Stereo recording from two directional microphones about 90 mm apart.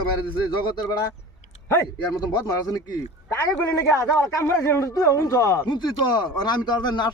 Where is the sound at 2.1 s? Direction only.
45° left (ahead or behind).